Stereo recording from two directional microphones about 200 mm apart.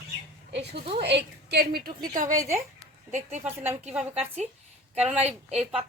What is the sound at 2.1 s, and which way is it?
Speech, 40° right (ahead or behind).